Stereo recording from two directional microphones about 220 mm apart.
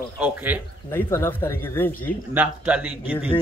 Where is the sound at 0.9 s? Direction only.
10° left (ahead or behind).